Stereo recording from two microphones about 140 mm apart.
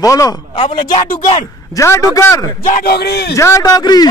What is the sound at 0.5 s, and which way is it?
Speech, 40° left (ahead or behind).